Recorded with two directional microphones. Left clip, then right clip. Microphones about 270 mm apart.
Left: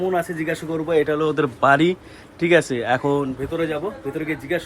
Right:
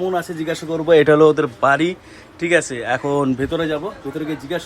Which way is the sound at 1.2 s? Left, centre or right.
Centre.